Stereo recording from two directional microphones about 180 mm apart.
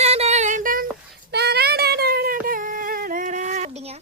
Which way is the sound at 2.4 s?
50° right (ahead or behind).